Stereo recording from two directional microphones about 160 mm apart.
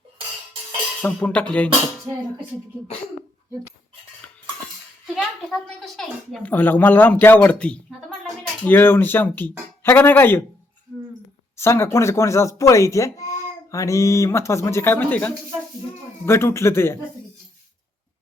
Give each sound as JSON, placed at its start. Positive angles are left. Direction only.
{"t": 1.0, "sound": "speech", "side_deg": 10}
{"t": 5.1, "sound": "speech", "side_deg": 0}
{"t": 11.5, "sound": "speech", "side_deg": 15}